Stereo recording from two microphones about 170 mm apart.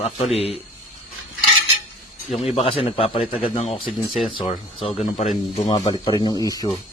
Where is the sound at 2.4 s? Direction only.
35° left (ahead or behind).